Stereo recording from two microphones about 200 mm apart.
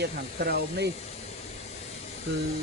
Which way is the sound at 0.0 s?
55° right (ahead or behind).